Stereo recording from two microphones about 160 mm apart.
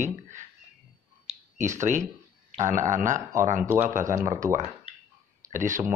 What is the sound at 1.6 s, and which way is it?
Speech, 50° right (ahead or behind).